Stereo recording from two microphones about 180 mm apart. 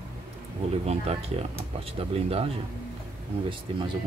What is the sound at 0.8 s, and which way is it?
Speech, 35° right (ahead or behind).